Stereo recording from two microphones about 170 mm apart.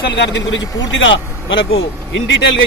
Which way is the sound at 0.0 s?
90° left.